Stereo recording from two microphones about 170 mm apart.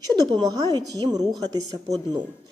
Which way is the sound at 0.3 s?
25° right (ahead or behind).